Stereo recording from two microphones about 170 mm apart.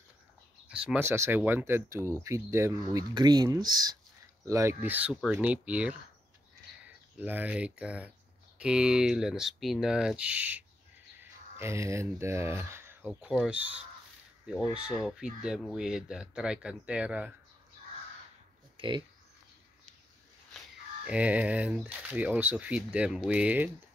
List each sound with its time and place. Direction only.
0.7 s speech: 5° right (ahead or behind)
7.2 s speech: 10° right (ahead or behind)
18.8 s speech: 30° right (ahead or behind)
21.0 s speech: 5° right (ahead or behind)